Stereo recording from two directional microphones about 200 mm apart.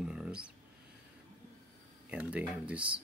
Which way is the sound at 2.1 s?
5° right (ahead or behind).